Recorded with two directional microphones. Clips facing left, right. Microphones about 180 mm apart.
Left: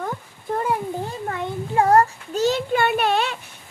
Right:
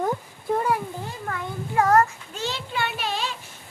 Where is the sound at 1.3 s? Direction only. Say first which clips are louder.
Left 2 dB; 25° left (ahead or behind); by 3.3 s 60° left (ahead or behind).